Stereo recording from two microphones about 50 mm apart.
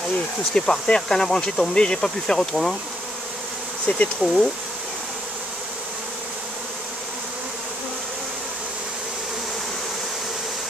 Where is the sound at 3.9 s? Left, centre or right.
Left.